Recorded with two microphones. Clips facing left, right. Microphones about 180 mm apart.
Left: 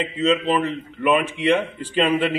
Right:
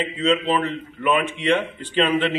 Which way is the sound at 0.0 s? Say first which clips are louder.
Left 1 dB; 10° left (ahead or behind).